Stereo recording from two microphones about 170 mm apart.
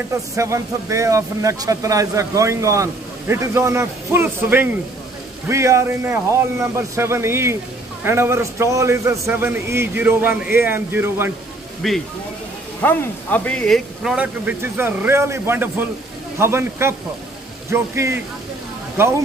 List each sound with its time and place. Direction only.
0.1 s speech: 15° right (ahead or behind)
11.8 s speech: centre (ahead or behind)